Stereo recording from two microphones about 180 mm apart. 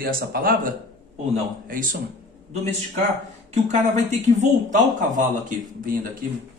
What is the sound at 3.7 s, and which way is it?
Speech, 40° right (ahead or behind).